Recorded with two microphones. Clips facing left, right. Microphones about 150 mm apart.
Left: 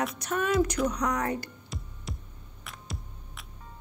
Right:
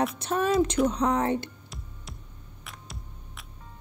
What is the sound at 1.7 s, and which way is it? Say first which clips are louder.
Music: left 4 dB; centre (ahead or behind).